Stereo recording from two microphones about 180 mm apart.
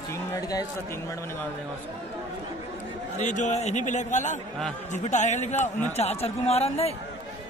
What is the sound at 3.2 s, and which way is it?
A man's voice, 40° left (ahead or behind).